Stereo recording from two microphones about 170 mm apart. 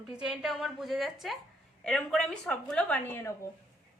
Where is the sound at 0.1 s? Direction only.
5° right (ahead or behind); by 3.3 s 15° left (ahead or behind).